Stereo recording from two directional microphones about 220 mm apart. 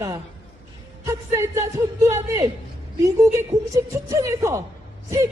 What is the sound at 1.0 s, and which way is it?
A woman's voice, 15° right (ahead or behind).